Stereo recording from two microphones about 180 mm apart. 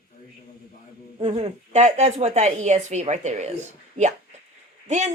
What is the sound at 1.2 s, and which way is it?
Speech, 35° right (ahead or behind).